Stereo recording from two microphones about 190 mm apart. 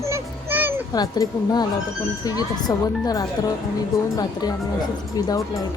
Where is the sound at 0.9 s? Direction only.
20° left (ahead or behind).